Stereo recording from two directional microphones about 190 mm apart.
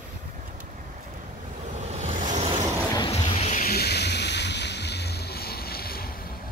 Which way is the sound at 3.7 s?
60° left (ahead or behind).